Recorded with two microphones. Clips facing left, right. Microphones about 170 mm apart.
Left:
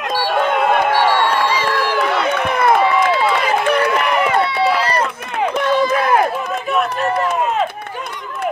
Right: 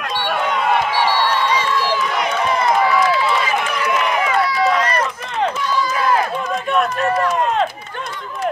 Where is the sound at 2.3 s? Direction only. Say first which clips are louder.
Left 1 dB; 60° left (ahead or behind).